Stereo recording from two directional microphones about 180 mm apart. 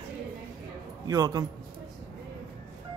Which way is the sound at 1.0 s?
20° right (ahead or behind).